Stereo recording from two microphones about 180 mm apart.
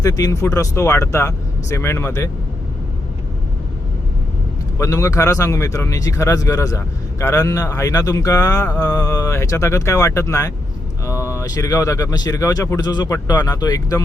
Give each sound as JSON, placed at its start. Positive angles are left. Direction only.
{"t": 0.0, "sound": "speech", "side_deg": 20}
{"t": 4.8, "sound": "speech", "side_deg": 20}